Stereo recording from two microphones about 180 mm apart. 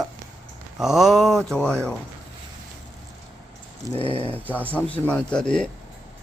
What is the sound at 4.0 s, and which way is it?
Speech, 30° left (ahead or behind).